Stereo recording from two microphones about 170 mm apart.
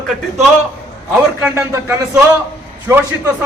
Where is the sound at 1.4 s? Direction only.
10° right (ahead or behind).